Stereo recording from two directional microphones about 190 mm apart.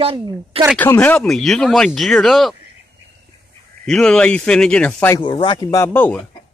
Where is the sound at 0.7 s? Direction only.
10° left (ahead or behind).